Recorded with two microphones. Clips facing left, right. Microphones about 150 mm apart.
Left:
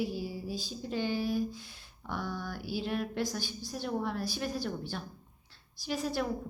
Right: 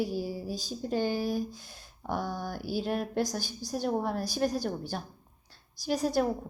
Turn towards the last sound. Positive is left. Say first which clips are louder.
# right 5 dB
turn(degrees=-40)  # may be behind; listen again after turning